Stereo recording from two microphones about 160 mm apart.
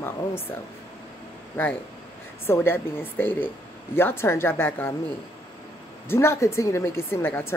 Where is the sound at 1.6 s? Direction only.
15° left (ahead or behind).